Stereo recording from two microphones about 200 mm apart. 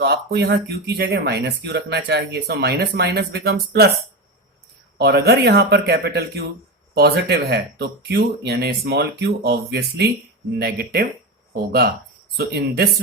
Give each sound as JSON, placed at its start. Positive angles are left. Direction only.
{"t": 0.0, "sound": "speech", "side_deg": -55}
{"t": 4.9, "sound": "speech", "side_deg": -55}